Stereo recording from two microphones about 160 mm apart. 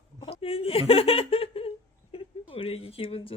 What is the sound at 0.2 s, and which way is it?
Giggle, 35° left (ahead or behind).